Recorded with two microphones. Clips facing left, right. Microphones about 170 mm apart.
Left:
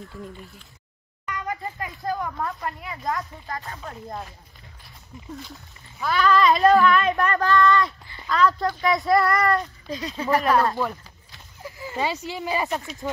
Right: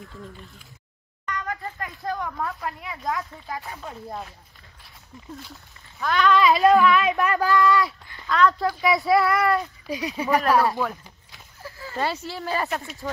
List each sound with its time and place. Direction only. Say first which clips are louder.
1.2 s speech: left 1 dB; 10° left (ahead or behind)
5.9 s speech: even; 5° left (ahead or behind)
9.8 s speech: right 1 dB; 10° right (ahead or behind)
10.8 s a sound: even; centre (ahead or behind)
11.6 s a sound: even; 15° left (ahead or behind)
12.3 s speech: left 1 dB; 10° left (ahead or behind)
12.6 s speech: left 1 dB; 5° right (ahead or behind)